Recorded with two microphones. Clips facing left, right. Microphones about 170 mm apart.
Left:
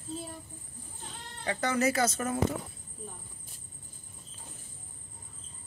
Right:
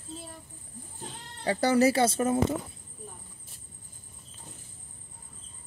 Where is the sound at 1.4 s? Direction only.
35° right (ahead or behind).